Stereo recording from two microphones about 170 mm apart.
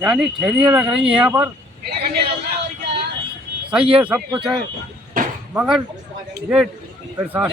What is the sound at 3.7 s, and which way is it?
Speech, 5° right (ahead or behind).